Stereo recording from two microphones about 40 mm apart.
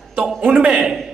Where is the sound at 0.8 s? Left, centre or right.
Centre.